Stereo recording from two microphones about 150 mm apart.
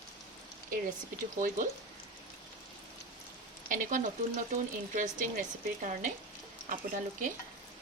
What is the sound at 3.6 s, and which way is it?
Speech, 65° right (ahead or behind).